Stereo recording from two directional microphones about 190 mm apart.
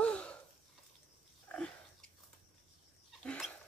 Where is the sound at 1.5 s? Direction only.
10° left (ahead or behind).